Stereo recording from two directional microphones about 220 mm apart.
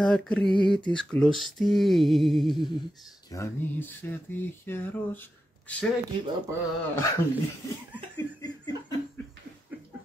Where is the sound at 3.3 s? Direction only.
10° left (ahead or behind).